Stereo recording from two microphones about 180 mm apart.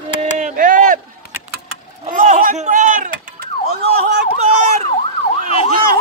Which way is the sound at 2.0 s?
45° right (ahead or behind).